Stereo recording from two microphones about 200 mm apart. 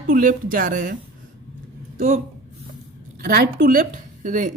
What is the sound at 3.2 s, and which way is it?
Speech, 45° right (ahead or behind).